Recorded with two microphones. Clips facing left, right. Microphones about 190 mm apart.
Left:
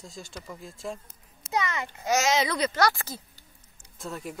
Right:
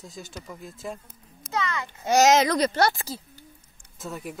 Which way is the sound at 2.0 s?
35° right (ahead or behind).